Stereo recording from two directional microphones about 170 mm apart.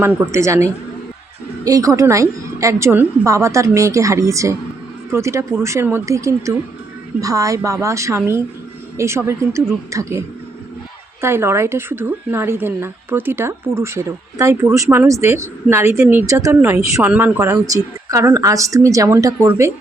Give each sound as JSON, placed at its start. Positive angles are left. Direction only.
{"t": 0.0, "sound": "a woman's voice", "side_deg": -15}